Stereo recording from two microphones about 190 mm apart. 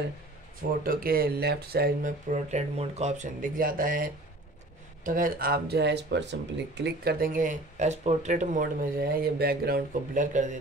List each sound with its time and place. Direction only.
0.8 s speech: 50° right (ahead or behind)
2.3 s speech: 35° right (ahead or behind); by 6.3 s 65° right (ahead or behind)
6.8 s speech: 55° right (ahead or behind)